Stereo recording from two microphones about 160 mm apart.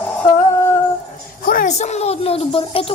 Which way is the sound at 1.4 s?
55° left (ahead or behind).